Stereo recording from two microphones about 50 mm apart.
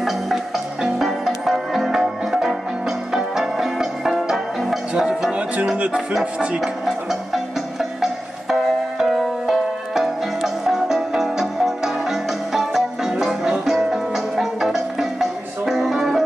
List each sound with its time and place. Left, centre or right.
0.9 s music: centre
6.6 s music: centre